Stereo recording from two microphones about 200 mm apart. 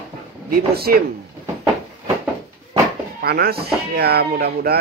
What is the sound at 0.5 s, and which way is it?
Speech, 50° right (ahead or behind).